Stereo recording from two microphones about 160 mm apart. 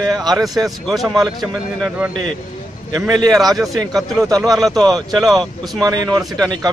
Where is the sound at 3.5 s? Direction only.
20° right (ahead or behind).